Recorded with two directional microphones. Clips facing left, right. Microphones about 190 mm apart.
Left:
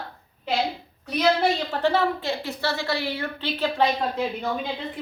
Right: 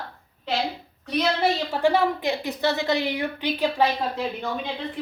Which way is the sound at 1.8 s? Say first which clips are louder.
Right 2 dB; 15° right (ahead or behind).